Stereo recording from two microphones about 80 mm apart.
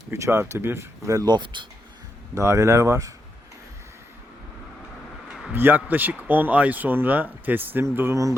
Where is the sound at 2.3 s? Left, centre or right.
Right.